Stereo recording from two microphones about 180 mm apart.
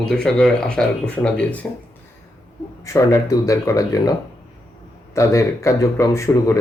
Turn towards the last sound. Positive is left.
turn(degrees=20)  # may be behind; listen again after turning